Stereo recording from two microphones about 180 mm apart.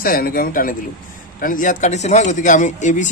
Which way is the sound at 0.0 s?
55° left (ahead or behind).